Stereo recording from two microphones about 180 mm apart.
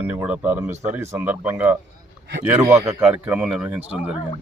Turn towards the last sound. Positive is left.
turn(degrees=-5)  # may be behind; listen again after turning